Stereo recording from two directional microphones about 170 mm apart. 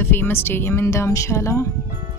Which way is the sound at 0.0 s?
10° left (ahead or behind).